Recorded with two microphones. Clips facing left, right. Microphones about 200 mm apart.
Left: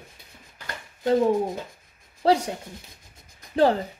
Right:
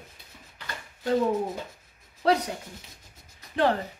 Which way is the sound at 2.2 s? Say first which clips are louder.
Left 3 dB; 30° left (ahead or behind).